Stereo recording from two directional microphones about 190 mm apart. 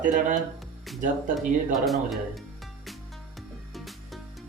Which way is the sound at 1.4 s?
Centre (ahead or behind).